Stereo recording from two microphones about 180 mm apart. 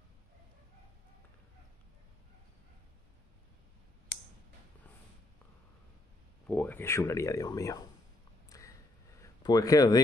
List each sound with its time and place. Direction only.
6.4 s speech: 10° left (ahead or behind)
8.5 s a sound: 15° left (ahead or behind)
9.4 s speech: 20° left (ahead or behind)